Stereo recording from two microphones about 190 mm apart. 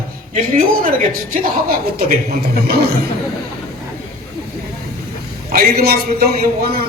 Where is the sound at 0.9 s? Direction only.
50° right (ahead or behind).